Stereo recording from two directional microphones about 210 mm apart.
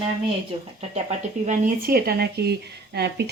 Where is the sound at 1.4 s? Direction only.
45° right (ahead or behind).